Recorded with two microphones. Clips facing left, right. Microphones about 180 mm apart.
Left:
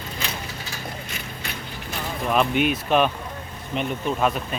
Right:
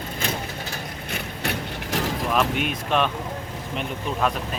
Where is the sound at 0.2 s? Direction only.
55° right (ahead or behind); by 2.1 s 90° right.